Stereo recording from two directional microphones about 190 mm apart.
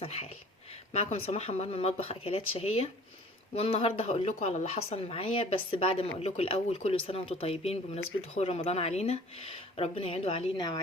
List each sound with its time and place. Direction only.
0.0 s speech: 35° left (ahead or behind)